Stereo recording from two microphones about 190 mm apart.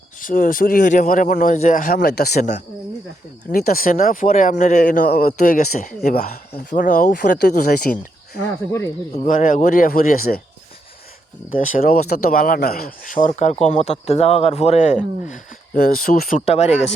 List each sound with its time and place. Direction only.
0.2 s speech: 45° left (ahead or behind)
3.5 s speech: 50° left (ahead or behind)
6.1 s speech: 50° left (ahead or behind)
9.1 s speech: 45° left (ahead or behind)
11.5 s speech: 45° left (ahead or behind)
13.2 s speech: 40° left (ahead or behind)
15.3 s speech: 45° left (ahead or behind)
16.5 s speech: 35° left (ahead or behind)